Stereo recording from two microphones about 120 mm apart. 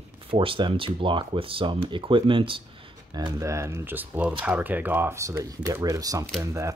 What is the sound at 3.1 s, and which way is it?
Speech, 30° right (ahead or behind).